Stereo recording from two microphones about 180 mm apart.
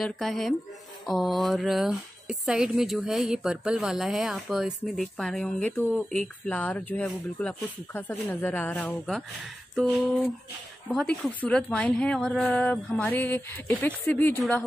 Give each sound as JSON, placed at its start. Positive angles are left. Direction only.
{"t": 0.0, "sound": "speech", "side_deg": 0}
{"t": 10.9, "sound": "speech", "side_deg": 5}